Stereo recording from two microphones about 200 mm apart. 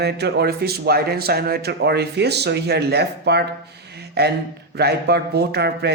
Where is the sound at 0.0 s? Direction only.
55° right (ahead or behind).